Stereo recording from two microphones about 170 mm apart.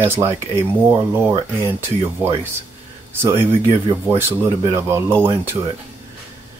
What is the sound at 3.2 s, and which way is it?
Speech, 15° right (ahead or behind).